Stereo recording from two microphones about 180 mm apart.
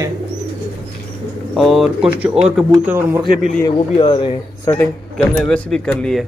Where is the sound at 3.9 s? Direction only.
30° left (ahead or behind).